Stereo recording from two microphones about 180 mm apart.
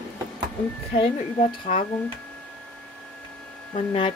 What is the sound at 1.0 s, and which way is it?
Speech, 35° left (ahead or behind).